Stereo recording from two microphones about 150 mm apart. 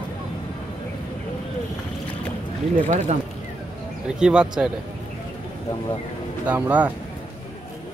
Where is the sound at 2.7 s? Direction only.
60° right (ahead or behind).